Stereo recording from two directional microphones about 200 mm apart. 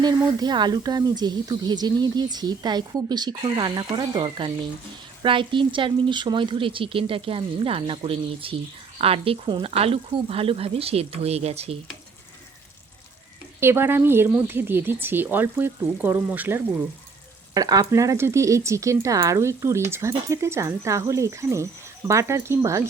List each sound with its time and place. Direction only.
0.0 s speech: 20° right (ahead or behind)
13.6 s speech: 10° right (ahead or behind)